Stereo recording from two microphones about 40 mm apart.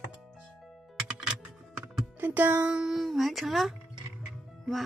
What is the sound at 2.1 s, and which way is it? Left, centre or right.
Music, right.